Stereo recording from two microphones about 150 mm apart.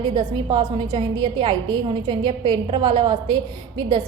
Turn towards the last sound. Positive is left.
turn(degrees=-30)  # may be behind; listen again after turning